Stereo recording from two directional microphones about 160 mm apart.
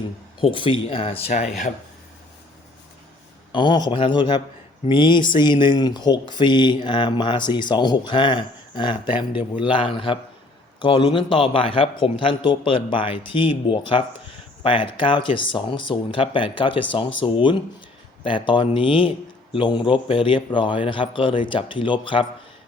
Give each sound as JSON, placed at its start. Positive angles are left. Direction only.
{"t": 0.3, "sound": "a man's voice", "side_deg": 30}
{"t": 3.5, "sound": "a man's voice", "side_deg": 30}